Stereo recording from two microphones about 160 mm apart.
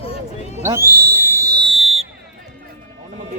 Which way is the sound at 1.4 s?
25° right (ahead or behind).